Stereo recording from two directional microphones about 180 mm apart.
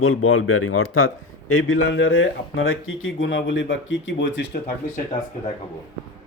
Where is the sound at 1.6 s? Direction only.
90° left.